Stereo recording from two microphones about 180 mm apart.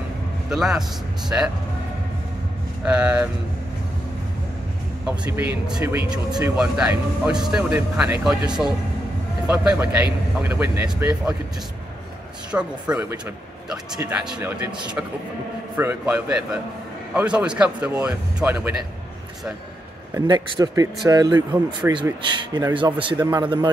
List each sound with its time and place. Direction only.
0.5 s a man's voice: centre (ahead or behind)
1.3 s speech: 15° right (ahead or behind)
2.8 s speech: 5° right (ahead or behind)
5.0 s a man's voice: 10° right (ahead or behind)
12.4 s a man's voice: 5° right (ahead or behind)
20.2 s speech: 25° right (ahead or behind)